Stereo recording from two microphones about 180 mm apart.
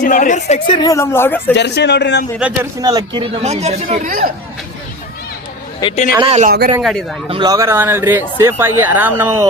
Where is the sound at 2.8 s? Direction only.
25° right (ahead or behind).